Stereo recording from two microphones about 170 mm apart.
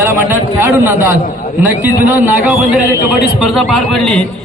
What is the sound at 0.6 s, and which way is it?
Speech, 15° right (ahead or behind).